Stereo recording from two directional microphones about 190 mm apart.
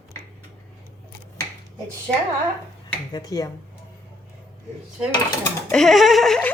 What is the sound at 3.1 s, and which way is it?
Speech, 20° left (ahead or behind).